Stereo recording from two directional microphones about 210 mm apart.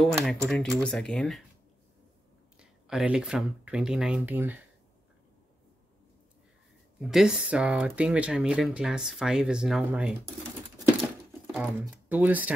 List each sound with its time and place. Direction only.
0.0 s speech: centre (ahead or behind)
2.6 s speech: 5° right (ahead or behind)
7.0 s speech: centre (ahead or behind)
11.8 s speech: 10° right (ahead or behind)